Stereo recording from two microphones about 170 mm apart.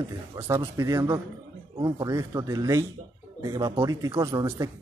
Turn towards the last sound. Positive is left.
turn(degrees=-20)  # may be behind; listen again after turning